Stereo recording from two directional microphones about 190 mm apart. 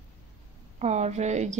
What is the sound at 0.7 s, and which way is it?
Speech, 35° right (ahead or behind).